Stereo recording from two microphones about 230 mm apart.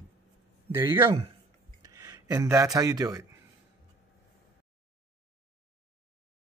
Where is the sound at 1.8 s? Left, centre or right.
Centre.